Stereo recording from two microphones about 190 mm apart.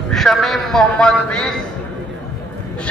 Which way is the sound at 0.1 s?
Centre (ahead or behind).